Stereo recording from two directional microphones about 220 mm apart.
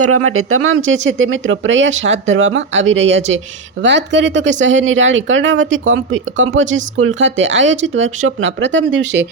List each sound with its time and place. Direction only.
0.0 s speech: 80° right; by 9.2 s 55° right (ahead or behind)